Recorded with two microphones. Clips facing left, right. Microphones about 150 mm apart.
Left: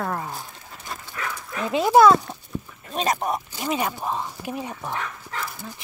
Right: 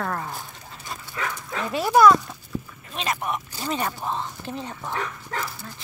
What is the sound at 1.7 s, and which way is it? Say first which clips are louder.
Speech: left 2 dB; 20° left (ahead or behind).